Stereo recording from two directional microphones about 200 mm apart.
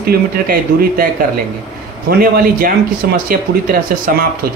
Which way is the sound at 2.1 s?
45° right (ahead or behind).